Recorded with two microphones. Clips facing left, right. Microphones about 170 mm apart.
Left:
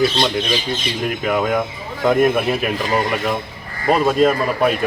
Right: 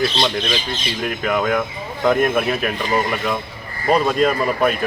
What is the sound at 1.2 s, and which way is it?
Speech, 5° left (ahead or behind).